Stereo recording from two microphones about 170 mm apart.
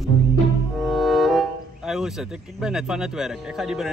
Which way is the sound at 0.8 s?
Centre (ahead or behind).